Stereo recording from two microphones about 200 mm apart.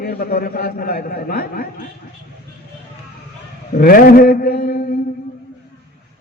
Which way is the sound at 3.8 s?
45° left (ahead or behind).